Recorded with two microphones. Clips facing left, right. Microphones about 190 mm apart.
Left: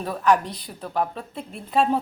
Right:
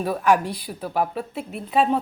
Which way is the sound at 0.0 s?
10° right (ahead or behind).